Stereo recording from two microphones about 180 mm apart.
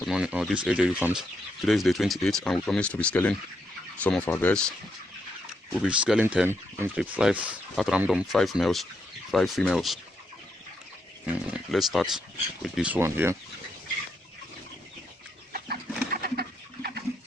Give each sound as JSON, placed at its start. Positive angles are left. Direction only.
{"t": 0.0, "sound": "speech", "side_deg": -5}
{"t": 5.7, "sound": "speech", "side_deg": -5}
{"t": 11.3, "sound": "speech", "side_deg": 0}
{"t": 15.5, "sound": "bird", "side_deg": -55}